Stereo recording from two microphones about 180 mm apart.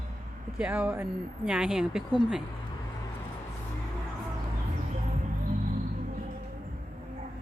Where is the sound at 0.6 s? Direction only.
5° right (ahead or behind).